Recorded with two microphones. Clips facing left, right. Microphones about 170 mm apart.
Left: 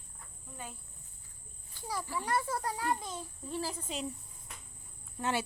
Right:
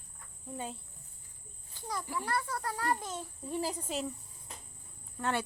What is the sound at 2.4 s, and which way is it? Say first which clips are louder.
Speech: left 2 dB; 25° left (ahead or behind).